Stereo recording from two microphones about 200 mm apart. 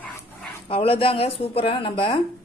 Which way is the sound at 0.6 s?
25° left (ahead or behind).